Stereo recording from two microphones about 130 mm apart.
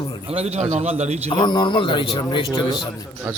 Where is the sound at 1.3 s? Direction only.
35° left (ahead or behind).